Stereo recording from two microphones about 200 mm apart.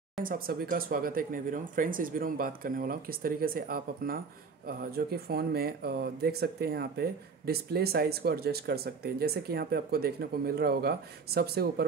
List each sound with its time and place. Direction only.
0.2 s speech: 45° right (ahead or behind)